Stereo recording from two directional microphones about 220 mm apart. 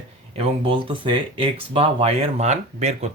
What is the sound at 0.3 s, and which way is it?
Speech, 25° right (ahead or behind).